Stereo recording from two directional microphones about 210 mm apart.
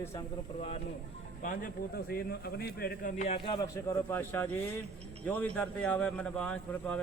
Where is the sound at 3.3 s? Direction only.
25° left (ahead or behind).